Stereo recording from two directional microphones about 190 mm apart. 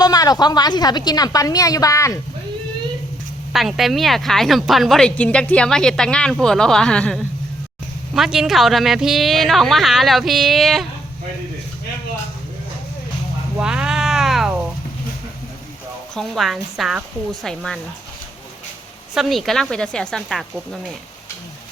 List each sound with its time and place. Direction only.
0.0 s a woman's voice: 20° left (ahead or behind)
3.5 s speech: centre (ahead or behind)
13.6 s cat: 5° right (ahead or behind)
16.1 s speech: centre (ahead or behind)
19.1 s speech: centre (ahead or behind)